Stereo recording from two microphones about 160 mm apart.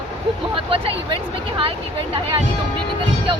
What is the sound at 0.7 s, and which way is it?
Speech, 35° right (ahead or behind).